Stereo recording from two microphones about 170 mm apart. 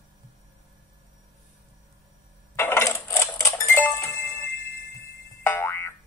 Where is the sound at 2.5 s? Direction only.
15° left (ahead or behind).